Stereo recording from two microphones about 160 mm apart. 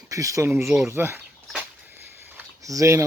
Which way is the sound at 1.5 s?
10° right (ahead or behind).